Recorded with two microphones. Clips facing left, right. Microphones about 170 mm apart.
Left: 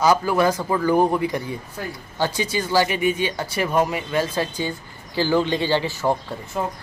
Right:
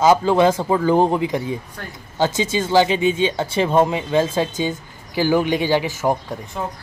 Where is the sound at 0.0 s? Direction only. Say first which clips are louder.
Right 4 dB; 25° right (ahead or behind).